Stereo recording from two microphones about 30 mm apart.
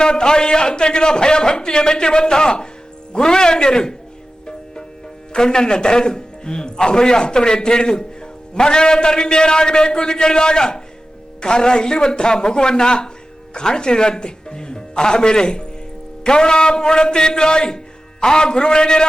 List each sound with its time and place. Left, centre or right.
0.0 s a man's voice: left
4.4 s music: left
5.3 s a man's voice: left